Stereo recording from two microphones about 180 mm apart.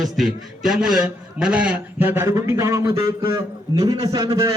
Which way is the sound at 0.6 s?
Centre (ahead or behind).